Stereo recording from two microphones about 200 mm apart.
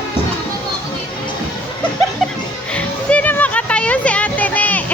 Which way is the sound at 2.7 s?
5° left (ahead or behind).